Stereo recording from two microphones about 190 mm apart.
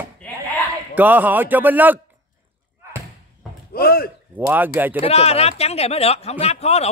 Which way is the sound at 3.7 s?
55° left (ahead or behind).